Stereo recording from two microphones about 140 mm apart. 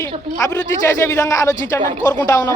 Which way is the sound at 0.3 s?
20° left (ahead or behind).